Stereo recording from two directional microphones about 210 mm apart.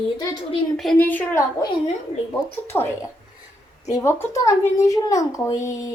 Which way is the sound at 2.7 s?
15° left (ahead or behind).